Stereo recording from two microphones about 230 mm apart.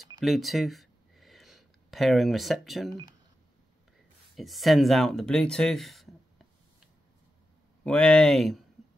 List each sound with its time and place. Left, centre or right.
0.2 s a sound: centre
2.9 s speech: centre
4.4 s speech: centre
7.8 s speech: centre